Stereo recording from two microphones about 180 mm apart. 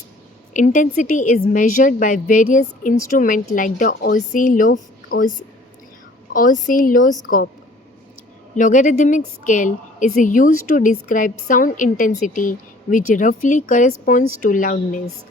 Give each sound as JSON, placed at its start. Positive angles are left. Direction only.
{"t": 0.5, "sound": "a woman's voice", "side_deg": 45}
{"t": 8.5, "sound": "a woman's voice", "side_deg": 45}